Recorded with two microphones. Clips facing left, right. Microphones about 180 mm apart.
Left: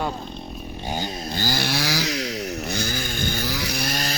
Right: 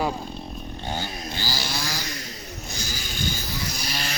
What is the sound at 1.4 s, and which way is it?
Chainsaw, 55° left (ahead or behind).